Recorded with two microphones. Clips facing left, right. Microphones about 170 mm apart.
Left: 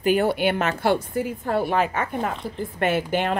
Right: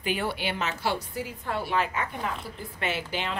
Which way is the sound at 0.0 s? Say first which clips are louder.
Left 10 dB; 50° left (ahead or behind).